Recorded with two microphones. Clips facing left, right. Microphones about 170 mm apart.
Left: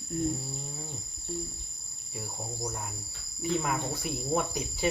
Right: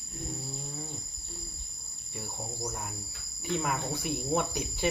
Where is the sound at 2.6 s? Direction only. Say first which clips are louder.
Even; centre (ahead or behind).